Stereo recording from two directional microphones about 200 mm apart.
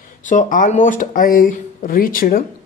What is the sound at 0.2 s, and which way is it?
Speech, 40° left (ahead or behind).